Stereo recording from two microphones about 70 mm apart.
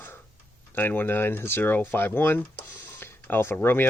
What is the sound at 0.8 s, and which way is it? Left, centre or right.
Speech, left.